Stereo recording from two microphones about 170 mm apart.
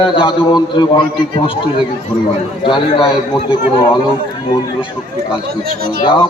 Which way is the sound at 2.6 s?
30° left (ahead or behind).